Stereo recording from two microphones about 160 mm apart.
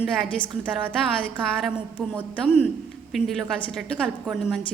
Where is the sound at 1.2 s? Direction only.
5° right (ahead or behind).